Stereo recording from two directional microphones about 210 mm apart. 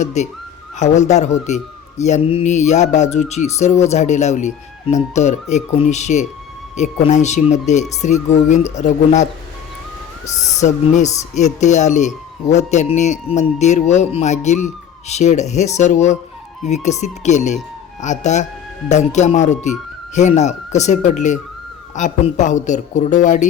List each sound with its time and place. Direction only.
0.0 s speech: 35° left (ahead or behind)
10.6 s speech: 35° left (ahead or behind)